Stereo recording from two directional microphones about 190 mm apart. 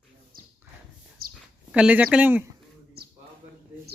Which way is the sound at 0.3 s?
50° right (ahead or behind).